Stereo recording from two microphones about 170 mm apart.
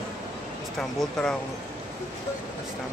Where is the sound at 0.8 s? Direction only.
5° left (ahead or behind).